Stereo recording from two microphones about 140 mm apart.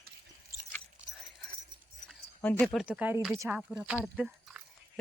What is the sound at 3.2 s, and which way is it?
Speech, centre (ahead or behind).